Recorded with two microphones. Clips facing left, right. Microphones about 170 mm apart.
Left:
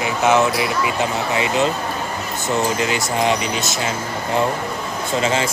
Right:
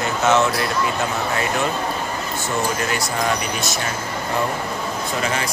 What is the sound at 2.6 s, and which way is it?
Speech, 20° left (ahead or behind).